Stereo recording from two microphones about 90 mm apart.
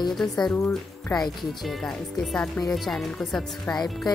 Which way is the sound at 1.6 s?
Centre (ahead or behind).